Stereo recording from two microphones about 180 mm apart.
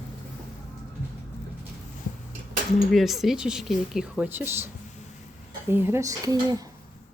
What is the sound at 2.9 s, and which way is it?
Speech, centre (ahead or behind).